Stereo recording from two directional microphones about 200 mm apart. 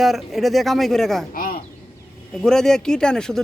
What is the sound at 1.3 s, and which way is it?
Speech, 45° left (ahead or behind).